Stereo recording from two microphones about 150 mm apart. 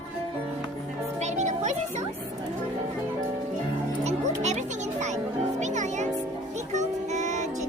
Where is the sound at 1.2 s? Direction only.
50° right (ahead or behind).